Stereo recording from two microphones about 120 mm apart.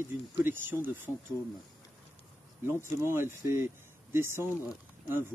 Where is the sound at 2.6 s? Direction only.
20° right (ahead or behind).